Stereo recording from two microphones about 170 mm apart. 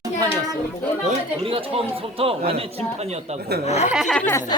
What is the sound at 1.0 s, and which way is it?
Speech, 35° right (ahead or behind).